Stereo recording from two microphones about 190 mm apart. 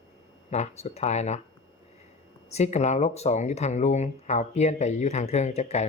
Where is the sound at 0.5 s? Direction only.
35° left (ahead or behind).